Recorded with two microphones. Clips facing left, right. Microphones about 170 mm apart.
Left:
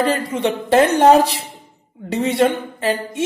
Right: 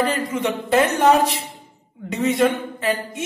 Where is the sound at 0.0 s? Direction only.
30° left (ahead or behind).